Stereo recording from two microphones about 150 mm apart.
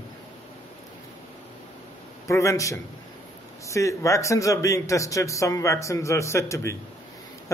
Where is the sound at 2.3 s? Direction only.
20° left (ahead or behind).